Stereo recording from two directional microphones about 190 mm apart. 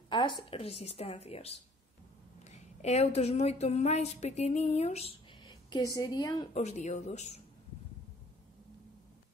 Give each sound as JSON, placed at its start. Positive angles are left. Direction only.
{"t": 0.1, "sound": "speech", "side_deg": 25}
{"t": 5.4, "sound": "a sound", "side_deg": 20}
{"t": 5.9, "sound": "a woman's voice", "side_deg": 20}
{"t": 6.5, "sound": "speech", "side_deg": 35}